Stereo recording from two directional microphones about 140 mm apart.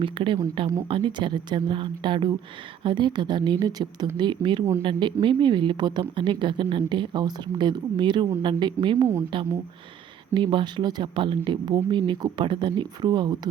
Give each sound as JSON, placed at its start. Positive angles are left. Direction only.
{"t": 0.0, "sound": "speech", "side_deg": -35}
{"t": 10.3, "sound": "speech", "side_deg": -35}